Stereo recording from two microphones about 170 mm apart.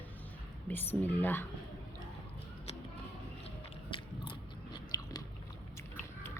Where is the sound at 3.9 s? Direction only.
30° left (ahead or behind).